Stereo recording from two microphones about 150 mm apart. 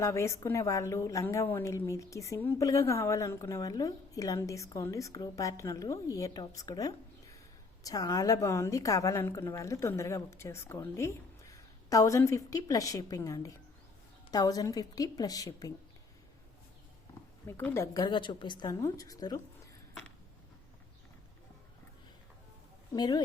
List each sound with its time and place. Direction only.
0.0 s a woman's voice: 20° left (ahead or behind)
17.4 s a woman's voice: 15° left (ahead or behind)
17.9 s a woman's voice: 30° left (ahead or behind)
22.9 s a woman's voice: 30° left (ahead or behind)